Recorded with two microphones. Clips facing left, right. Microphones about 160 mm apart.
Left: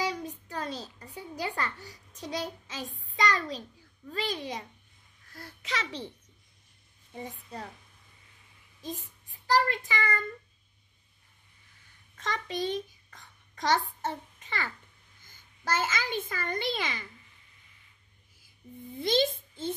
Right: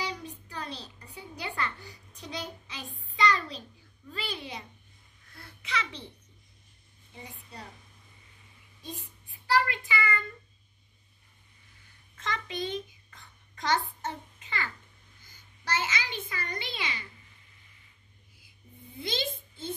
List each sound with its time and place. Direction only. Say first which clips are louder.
0.0 s a sound: left 4 dB; 40° left (ahead or behind)
4.1 s a child's voice: left 5 dB; 40° left (ahead or behind)
8.8 s a child's voice: left 4 dB; 40° left (ahead or behind)
12.2 s a child's voice: left 2 dB; 40° left (ahead or behind)
18.9 s a child's voice: left 8 dB; 40° left (ahead or behind)